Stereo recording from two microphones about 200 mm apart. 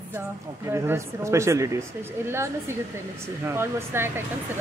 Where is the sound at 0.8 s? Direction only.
15° right (ahead or behind).